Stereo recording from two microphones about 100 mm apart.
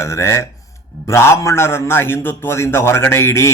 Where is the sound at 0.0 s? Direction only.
30° left (ahead or behind).